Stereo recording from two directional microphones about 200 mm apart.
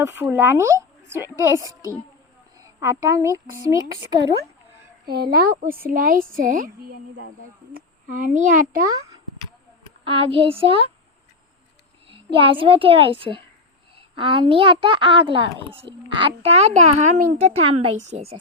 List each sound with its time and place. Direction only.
0.0 s speech: 10° right (ahead or behind)
5.0 s a woman's voice: 50° right (ahead or behind)
8.1 s a child's voice: 40° right (ahead or behind)
10.0 s a child's voice: 25° right (ahead or behind)
12.0 s a child's voice: 25° right (ahead or behind)